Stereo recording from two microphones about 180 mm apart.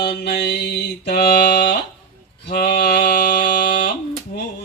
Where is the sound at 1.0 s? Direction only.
60° left (ahead or behind).